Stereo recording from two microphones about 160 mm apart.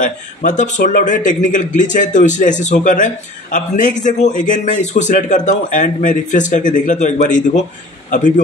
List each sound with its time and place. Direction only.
0.0 s speech: 50° left (ahead or behind)